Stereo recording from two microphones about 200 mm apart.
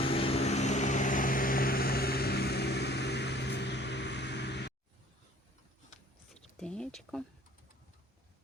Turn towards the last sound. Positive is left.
turn(degrees=5)  # may be behind; listen again after turning